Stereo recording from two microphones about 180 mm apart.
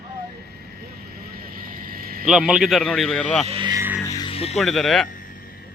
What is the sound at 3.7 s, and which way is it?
Music, 10° right (ahead or behind).